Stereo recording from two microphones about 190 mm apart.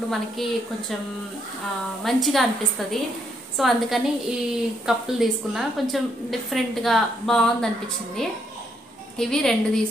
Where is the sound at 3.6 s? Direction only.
Centre (ahead or behind).